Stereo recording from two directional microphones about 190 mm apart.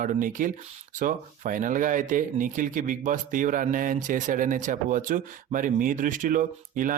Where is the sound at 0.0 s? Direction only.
45° right (ahead or behind).